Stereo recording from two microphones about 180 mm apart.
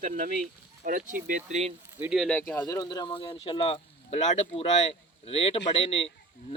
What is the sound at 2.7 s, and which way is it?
Speech, 20° left (ahead or behind).